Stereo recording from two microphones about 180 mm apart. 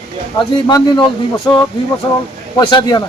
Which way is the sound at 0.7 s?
20° left (ahead or behind).